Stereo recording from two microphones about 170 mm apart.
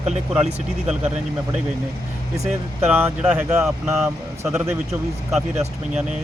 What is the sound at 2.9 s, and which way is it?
Speech, 10° right (ahead or behind).